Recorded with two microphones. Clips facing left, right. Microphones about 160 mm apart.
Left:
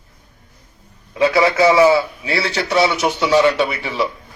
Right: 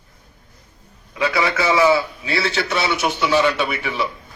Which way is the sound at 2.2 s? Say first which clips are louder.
Left 1 dB; 20° left (ahead or behind).